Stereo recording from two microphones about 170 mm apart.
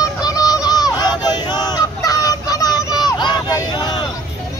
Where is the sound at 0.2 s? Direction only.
20° left (ahead or behind).